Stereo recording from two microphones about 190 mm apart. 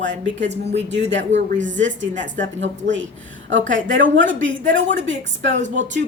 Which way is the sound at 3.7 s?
85° right.